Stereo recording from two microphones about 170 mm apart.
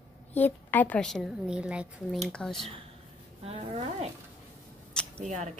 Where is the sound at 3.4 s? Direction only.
35° right (ahead or behind).